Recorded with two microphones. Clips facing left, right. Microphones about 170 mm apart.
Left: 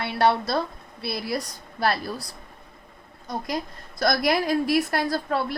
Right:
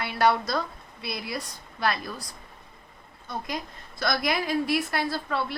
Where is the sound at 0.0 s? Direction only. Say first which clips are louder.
Left 2 dB; 25° left (ahead or behind).